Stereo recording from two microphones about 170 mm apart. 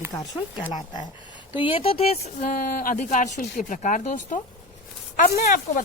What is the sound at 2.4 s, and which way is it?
Speech, 50° left (ahead or behind).